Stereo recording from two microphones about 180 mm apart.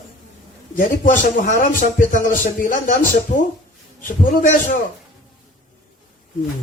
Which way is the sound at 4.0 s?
45° left (ahead or behind).